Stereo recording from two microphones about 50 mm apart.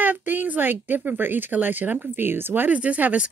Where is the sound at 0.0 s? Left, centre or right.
Right.